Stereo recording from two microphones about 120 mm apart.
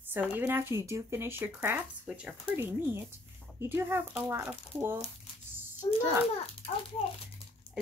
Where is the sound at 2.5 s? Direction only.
20° right (ahead or behind).